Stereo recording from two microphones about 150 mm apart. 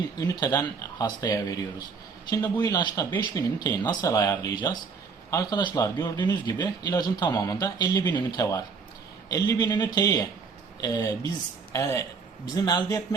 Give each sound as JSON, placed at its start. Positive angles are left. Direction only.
{"t": 0.2, "sound": "speech", "side_deg": 25}